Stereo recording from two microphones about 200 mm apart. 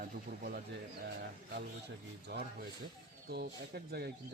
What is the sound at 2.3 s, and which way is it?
A man's voice, 55° right (ahead or behind).